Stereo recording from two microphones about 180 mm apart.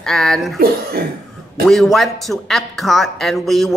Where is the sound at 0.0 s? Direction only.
Centre (ahead or behind).